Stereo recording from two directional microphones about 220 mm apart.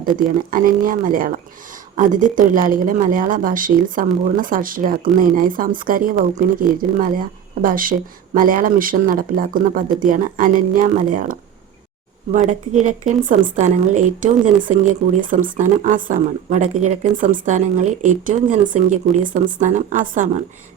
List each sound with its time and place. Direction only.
0.2 s speech: 40° right (ahead or behind)